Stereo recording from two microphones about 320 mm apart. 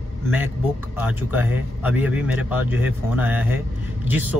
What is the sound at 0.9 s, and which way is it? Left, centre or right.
Speech, centre.